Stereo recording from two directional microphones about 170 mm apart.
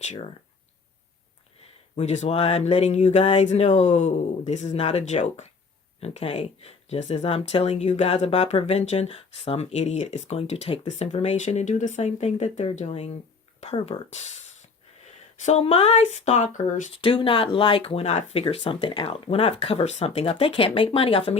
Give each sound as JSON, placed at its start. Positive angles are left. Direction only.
{"t": 0.0, "sound": "speech", "side_deg": 40}
{"t": 2.0, "sound": "speech", "side_deg": 40}
{"t": 16.9, "sound": "speech", "side_deg": 30}